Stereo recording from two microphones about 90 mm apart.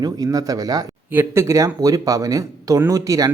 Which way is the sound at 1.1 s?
25° right (ahead or behind).